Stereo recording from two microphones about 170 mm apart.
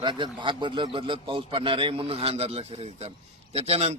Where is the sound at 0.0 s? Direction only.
30° right (ahead or behind).